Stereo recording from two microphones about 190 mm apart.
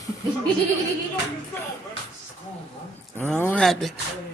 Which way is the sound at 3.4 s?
5° left (ahead or behind).